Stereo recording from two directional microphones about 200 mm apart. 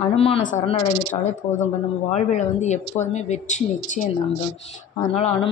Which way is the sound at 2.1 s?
35° left (ahead or behind).